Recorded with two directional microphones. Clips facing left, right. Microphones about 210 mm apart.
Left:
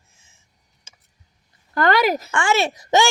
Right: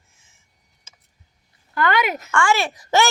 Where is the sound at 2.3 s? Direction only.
20° left (ahead or behind).